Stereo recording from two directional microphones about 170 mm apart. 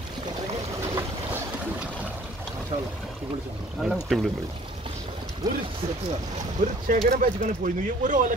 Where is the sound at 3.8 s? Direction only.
Centre (ahead or behind).